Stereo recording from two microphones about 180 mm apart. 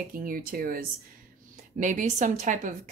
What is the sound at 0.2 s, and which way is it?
A woman's voice, 50° right (ahead or behind).